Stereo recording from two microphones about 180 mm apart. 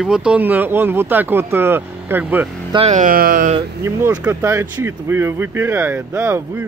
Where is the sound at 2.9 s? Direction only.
45° right (ahead or behind).